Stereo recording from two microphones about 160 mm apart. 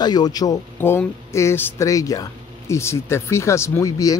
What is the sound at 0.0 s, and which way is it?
A man's voice, 25° left (ahead or behind).